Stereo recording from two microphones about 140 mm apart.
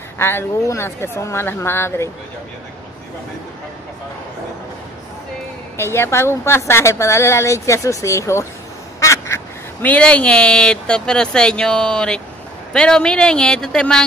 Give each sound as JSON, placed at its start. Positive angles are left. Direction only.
{"t": 0.2, "sound": "speech", "side_deg": 15}
{"t": 5.8, "sound": "a woman's voice", "side_deg": 20}